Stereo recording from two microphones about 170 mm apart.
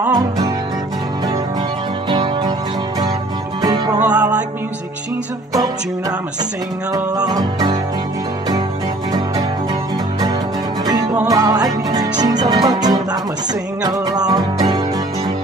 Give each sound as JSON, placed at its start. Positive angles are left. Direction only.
{"t": 2.0, "sound": "music", "side_deg": -30}
{"t": 3.6, "sound": "music", "side_deg": -25}
{"t": 5.5, "sound": "music", "side_deg": -20}
{"t": 11.2, "sound": "music", "side_deg": -20}